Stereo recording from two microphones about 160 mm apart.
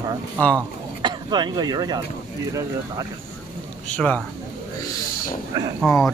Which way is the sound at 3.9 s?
10° left (ahead or behind).